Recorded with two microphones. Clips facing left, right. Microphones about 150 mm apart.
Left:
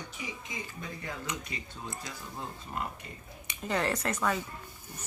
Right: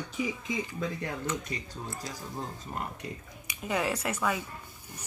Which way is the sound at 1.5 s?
40° right (ahead or behind).